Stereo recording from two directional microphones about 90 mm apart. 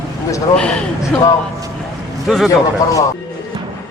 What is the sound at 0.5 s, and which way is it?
Speech, 10° left (ahead or behind).